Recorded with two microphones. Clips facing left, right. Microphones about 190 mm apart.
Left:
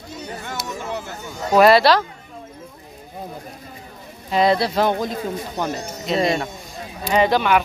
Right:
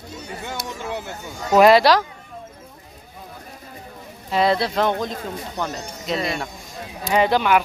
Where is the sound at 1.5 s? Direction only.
15° right (ahead or behind).